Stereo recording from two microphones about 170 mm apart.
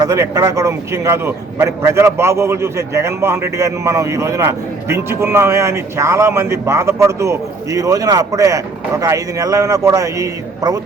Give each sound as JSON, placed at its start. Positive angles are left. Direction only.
{"t": 0.0, "sound": "a man's voice", "side_deg": -20}